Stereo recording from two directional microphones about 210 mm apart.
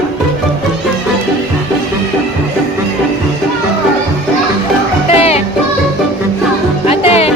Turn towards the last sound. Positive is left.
turn(degrees=30)  # may be behind; listen again after turning